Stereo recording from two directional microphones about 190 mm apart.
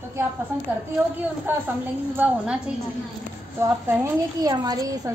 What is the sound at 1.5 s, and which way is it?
A woman's voice, 10° right (ahead or behind).